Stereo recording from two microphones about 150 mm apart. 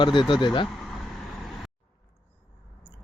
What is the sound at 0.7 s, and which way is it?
Vehicle, centre (ahead or behind).